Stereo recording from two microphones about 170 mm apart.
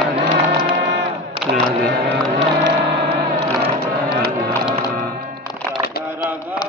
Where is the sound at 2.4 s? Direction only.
80° right.